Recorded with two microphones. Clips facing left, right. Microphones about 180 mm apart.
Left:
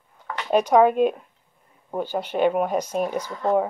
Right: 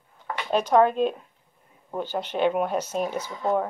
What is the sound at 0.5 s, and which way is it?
Speech, 10° left (ahead or behind).